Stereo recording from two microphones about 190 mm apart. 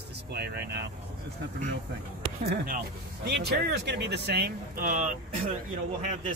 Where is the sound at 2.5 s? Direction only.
50° right (ahead or behind).